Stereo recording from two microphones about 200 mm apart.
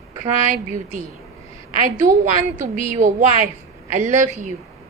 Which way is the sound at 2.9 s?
40° right (ahead or behind).